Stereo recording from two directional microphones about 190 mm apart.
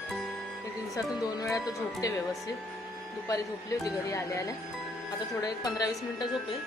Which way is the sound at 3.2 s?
20° left (ahead or behind).